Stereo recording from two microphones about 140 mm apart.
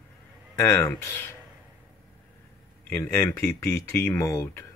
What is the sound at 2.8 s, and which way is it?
Speech, 15° left (ahead or behind).